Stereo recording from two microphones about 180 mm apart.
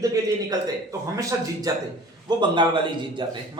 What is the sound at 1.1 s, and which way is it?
A man's voice, 20° right (ahead or behind).